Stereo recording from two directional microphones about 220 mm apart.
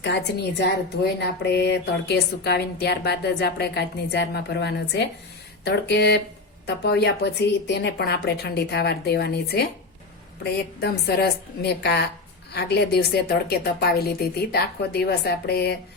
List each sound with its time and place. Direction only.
0.0 s speech: 50° left (ahead or behind)